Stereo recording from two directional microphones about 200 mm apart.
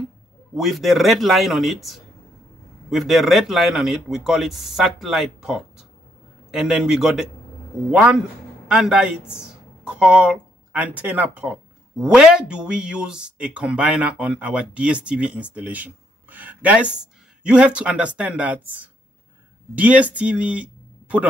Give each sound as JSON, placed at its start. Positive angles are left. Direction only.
{"t": 0.6, "sound": "speech", "side_deg": 0}